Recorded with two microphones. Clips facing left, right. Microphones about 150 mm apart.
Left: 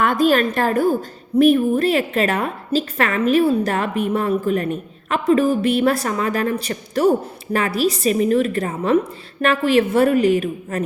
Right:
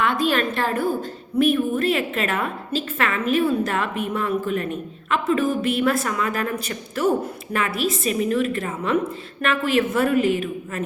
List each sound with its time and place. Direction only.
0.0 s a woman's voice: 45° left (ahead or behind)